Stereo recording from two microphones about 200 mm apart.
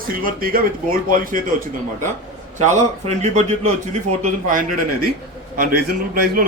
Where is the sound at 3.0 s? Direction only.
35° right (ahead or behind).